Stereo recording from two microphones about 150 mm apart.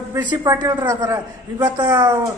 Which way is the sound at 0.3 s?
25° right (ahead or behind).